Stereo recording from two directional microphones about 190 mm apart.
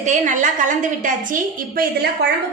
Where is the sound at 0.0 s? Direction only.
40° right (ahead or behind).